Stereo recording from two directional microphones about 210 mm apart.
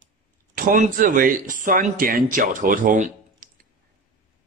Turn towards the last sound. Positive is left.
turn(degrees=-40)  # may be behind; listen again after turning